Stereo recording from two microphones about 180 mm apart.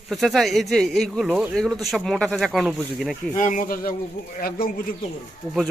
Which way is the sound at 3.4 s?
45° left (ahead or behind).